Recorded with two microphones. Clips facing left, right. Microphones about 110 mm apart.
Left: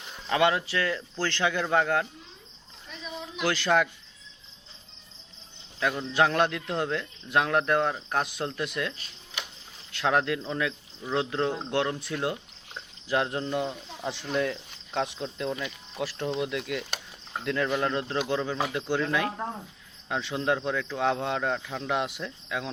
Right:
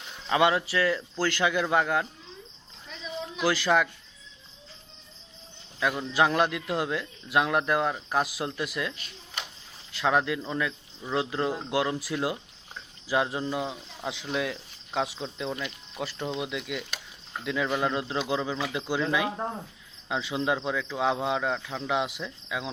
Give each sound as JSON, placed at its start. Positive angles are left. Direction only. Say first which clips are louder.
{"t": 0.3, "sound": "speech", "louder": "right 1 dB", "side_deg": -10}
{"t": 3.4, "sound": "speech", "louder": "even", "side_deg": -5}
{"t": 5.8, "sound": "speech", "louder": "even", "side_deg": -5}
{"t": 9.9, "sound": "speech", "louder": "even", "side_deg": 0}